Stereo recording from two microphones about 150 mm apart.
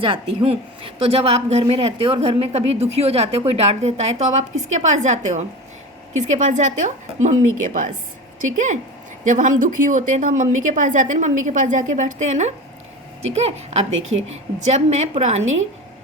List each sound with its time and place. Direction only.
0.0 s a woman's voice: 40° right (ahead or behind)